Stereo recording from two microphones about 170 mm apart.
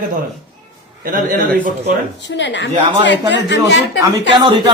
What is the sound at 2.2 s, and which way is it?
A woman's voice, 90° left.